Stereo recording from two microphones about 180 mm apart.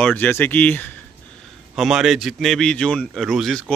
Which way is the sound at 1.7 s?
Centre (ahead or behind).